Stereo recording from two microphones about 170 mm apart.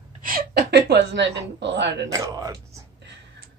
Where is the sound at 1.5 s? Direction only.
90° right.